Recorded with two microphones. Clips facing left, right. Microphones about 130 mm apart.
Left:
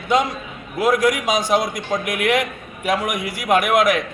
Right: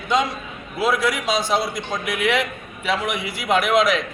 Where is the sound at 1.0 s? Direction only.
15° left (ahead or behind).